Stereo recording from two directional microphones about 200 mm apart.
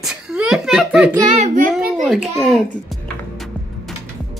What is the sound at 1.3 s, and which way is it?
Child singing, 40° right (ahead or behind).